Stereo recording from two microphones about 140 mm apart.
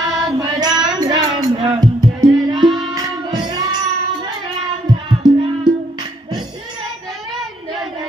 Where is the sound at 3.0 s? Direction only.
30° right (ahead or behind).